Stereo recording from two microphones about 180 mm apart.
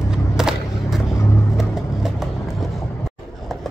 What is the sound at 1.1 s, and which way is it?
Vehicle, 15° left (ahead or behind).